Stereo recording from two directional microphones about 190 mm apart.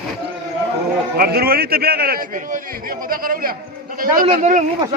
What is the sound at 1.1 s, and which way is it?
A man's voice, 55° right (ahead or behind).